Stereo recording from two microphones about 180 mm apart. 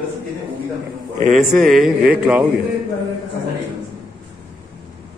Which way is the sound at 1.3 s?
Centre (ahead or behind).